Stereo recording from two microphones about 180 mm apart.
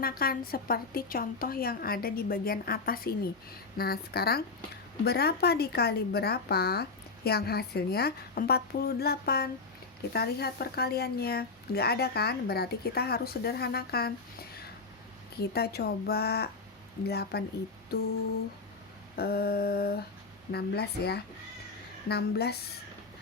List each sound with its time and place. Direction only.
0.0 s speech: 55° left (ahead or behind)
15.4 s speech: 60° left (ahead or behind)
19.1 s speech: 60° left (ahead or behind)